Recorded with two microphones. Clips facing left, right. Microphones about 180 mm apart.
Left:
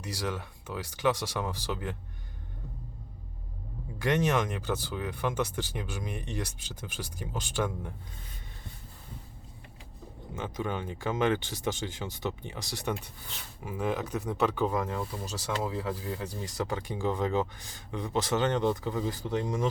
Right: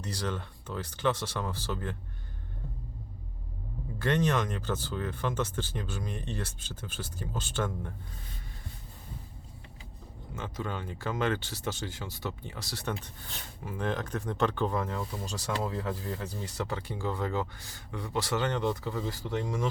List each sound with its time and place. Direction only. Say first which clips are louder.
0.0 s speech: even; 10° left (ahead or behind)
3.9 s speech: left 1 dB; 15° left (ahead or behind)
10.3 s speech: left 3 dB; 15° left (ahead or behind)